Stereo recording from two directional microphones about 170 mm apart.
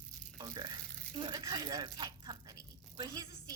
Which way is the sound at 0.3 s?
25° right (ahead or behind).